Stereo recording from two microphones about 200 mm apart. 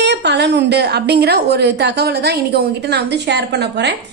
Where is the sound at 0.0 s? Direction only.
60° right (ahead or behind).